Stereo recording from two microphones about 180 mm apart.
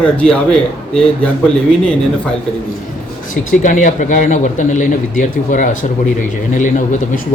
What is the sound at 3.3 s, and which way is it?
Speech, 45° left (ahead or behind).